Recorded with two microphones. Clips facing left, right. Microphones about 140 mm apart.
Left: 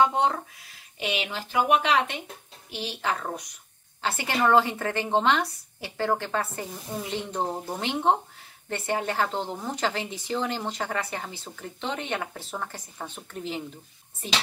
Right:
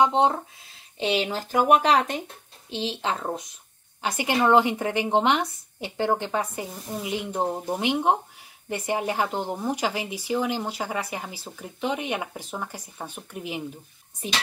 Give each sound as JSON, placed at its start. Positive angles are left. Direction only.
{"t": 0.0, "sound": "speech", "side_deg": -25}
{"t": 2.7, "sound": "speech", "side_deg": -25}